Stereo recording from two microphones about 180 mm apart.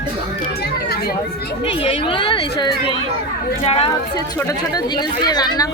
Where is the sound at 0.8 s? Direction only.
60° left (ahead or behind).